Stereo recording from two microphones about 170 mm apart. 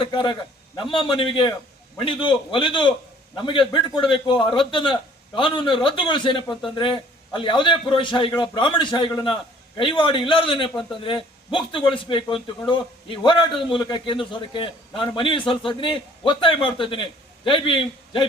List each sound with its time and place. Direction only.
0.0 s a man's voice: 30° left (ahead or behind)